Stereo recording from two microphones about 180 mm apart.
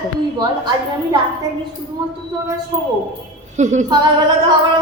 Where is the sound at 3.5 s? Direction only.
40° right (ahead or behind).